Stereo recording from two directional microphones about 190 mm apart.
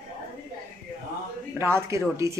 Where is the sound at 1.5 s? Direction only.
15° right (ahead or behind).